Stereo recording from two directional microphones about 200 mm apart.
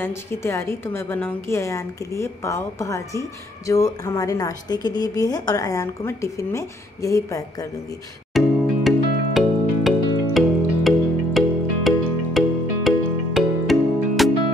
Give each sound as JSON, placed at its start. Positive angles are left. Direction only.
{"t": 0.0, "sound": "a woman's voice", "side_deg": 10}
{"t": 8.3, "sound": "music", "side_deg": 0}